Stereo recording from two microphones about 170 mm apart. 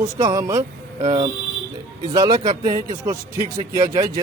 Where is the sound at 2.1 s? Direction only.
20° right (ahead or behind).